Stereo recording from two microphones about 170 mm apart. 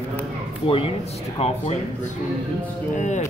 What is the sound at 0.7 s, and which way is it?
Speech, 30° left (ahead or behind).